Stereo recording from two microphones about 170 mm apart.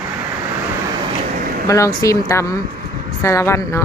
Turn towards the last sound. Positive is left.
turn(degrees=15)  # may be behind; listen again after turning